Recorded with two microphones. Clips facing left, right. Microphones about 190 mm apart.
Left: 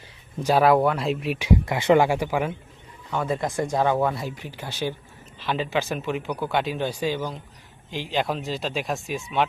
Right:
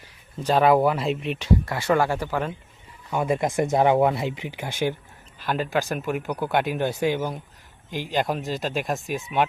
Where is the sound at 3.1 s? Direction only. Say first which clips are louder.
Right 2 dB; 15° right (ahead or behind).